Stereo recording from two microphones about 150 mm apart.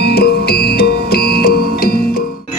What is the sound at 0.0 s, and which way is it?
Music, 90° left.